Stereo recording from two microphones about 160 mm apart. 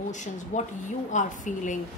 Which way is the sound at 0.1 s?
50° left (ahead or behind).